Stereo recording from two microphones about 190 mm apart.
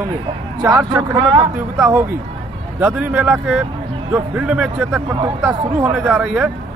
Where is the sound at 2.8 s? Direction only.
5° right (ahead or behind).